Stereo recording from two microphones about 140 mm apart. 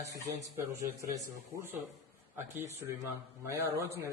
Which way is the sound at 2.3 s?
20° right (ahead or behind).